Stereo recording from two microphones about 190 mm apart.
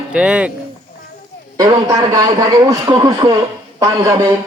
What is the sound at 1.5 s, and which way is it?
A man's voice, 20° right (ahead or behind).